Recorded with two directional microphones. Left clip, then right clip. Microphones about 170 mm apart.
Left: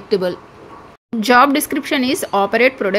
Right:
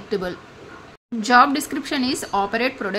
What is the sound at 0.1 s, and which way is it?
A woman's voice, 15° left (ahead or behind).